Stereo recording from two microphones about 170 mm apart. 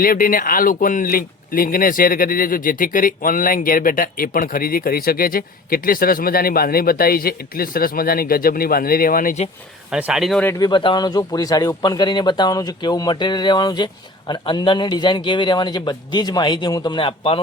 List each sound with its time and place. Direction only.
0.0 s speech: 55° left (ahead or behind)
9.9 s speech: 5° right (ahead or behind)
10.6 s a man's voice: 25° left (ahead or behind)